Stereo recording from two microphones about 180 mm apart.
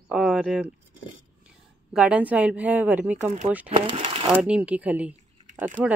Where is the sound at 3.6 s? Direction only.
30° right (ahead or behind).